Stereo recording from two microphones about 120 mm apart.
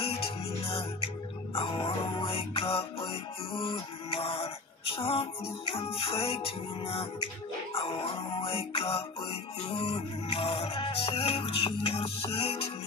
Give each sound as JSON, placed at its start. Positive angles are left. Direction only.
{"t": 0.6, "sound": "music", "side_deg": 50}